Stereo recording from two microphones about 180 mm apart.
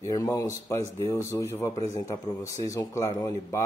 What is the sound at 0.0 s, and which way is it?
Speech, 20° left (ahead or behind).